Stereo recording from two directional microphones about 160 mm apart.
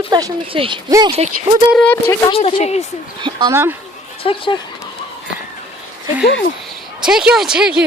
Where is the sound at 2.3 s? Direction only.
35° left (ahead or behind).